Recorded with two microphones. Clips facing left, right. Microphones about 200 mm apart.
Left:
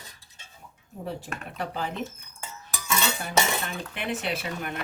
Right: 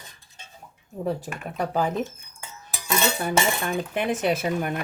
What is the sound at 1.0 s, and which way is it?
Cutlery, 45° right (ahead or behind).